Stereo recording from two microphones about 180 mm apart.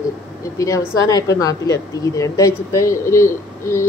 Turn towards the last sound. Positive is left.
turn(degrees=15)  # may be behind; listen again after turning